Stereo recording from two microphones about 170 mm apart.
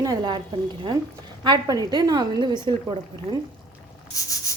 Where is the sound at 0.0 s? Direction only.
25° right (ahead or behind).